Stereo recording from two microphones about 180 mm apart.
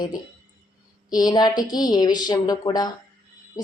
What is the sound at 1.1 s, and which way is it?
Speech, 20° left (ahead or behind).